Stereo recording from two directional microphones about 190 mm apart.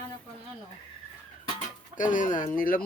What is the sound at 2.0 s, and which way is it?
Speech, 45° left (ahead or behind).